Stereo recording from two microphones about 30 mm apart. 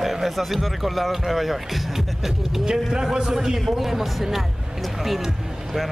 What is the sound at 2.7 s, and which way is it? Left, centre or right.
A man's voice, right.